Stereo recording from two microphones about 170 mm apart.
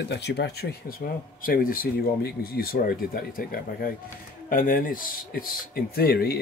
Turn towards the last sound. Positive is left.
turn(degrees=65)  # may be behind; listen again after turning